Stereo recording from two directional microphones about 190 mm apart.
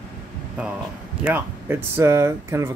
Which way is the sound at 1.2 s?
10° right (ahead or behind).